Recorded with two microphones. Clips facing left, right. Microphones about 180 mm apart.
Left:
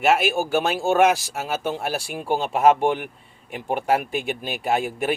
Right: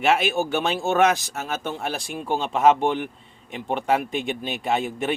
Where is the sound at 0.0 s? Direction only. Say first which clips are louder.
Left 1 dB; 5° left (ahead or behind).